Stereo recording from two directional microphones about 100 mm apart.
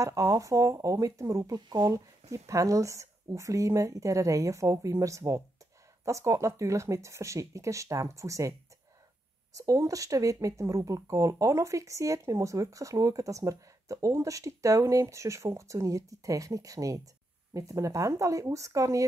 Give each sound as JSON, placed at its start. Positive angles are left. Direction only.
{"t": 0.0, "sound": "speech", "side_deg": -35}
{"t": 9.6, "sound": "speech", "side_deg": -35}